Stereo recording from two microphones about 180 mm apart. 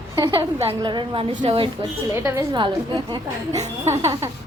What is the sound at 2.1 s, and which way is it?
Speech, 15° right (ahead or behind).